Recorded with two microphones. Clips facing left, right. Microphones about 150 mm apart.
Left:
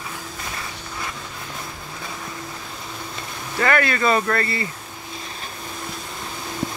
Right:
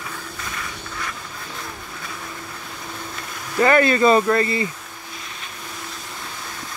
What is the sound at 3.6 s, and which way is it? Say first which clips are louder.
Speech: right 5 dB; 25° right (ahead or behind).